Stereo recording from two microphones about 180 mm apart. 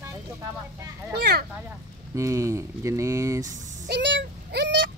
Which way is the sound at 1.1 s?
65° right (ahead or behind).